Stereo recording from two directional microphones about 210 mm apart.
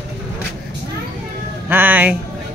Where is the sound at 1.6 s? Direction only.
10° right (ahead or behind).